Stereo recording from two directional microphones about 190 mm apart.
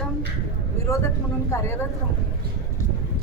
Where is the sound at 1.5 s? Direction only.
15° left (ahead or behind).